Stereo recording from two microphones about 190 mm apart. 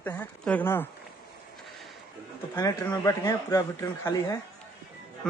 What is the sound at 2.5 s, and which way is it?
Speech, 15° left (ahead or behind).